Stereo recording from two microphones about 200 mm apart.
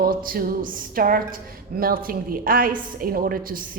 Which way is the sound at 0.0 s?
45° right (ahead or behind).